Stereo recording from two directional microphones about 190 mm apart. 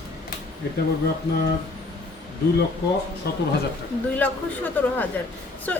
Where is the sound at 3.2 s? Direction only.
60° left (ahead or behind).